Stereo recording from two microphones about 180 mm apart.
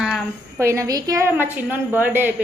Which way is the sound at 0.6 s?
15° right (ahead or behind).